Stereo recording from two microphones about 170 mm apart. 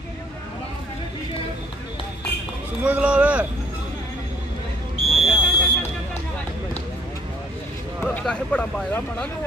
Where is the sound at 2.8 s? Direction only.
10° right (ahead or behind).